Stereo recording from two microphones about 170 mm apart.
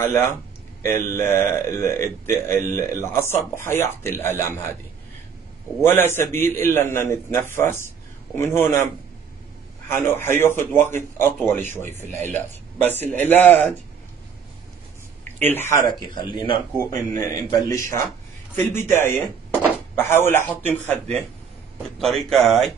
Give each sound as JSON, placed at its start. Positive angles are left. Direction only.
{"t": 0.0, "sound": "a man's voice", "side_deg": 15}
{"t": 5.8, "sound": "a man's voice", "side_deg": 15}
{"t": 9.8, "sound": "a man's voice", "side_deg": 15}
{"t": 15.4, "sound": "a man's voice", "side_deg": 10}